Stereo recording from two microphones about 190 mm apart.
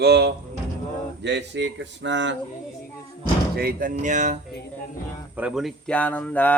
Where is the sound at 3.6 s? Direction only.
50° right (ahead or behind).